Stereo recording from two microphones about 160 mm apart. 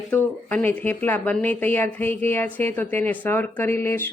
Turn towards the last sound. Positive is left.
turn(degrees=15)  # may be behind; listen again after turning